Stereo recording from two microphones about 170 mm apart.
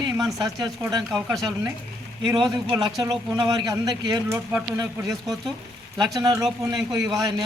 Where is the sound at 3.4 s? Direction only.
20° right (ahead or behind).